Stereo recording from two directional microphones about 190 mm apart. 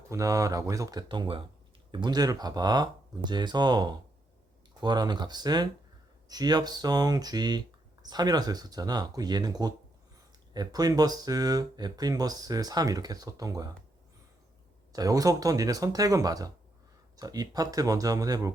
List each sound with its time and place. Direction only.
0.1 s speech: 15° right (ahead or behind)
14.9 s speech: 20° right (ahead or behind)